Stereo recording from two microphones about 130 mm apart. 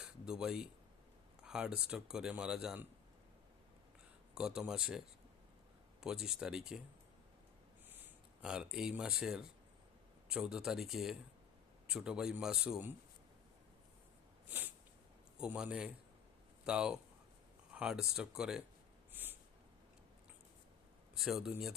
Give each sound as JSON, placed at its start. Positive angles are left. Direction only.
{"t": 0.0, "sound": "speech", "side_deg": -5}
{"t": 4.4, "sound": "speech", "side_deg": -5}
{"t": 8.4, "sound": "speech", "side_deg": -5}
{"t": 14.4, "sound": "snort", "side_deg": -15}
{"t": 15.4, "sound": "speech", "side_deg": -10}
{"t": 19.1, "sound": "a sound", "side_deg": -15}
{"t": 21.2, "sound": "speech", "side_deg": 0}